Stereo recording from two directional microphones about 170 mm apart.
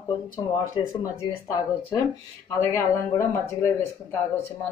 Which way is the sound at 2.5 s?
15° left (ahead or behind).